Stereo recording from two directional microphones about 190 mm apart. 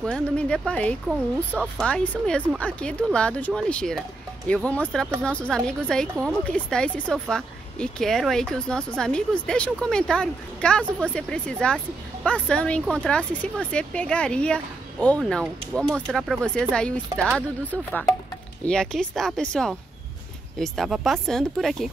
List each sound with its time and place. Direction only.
0.0 s a woman's voice: 5° left (ahead or behind)
18.7 s a woman's voice: 5° left (ahead or behind)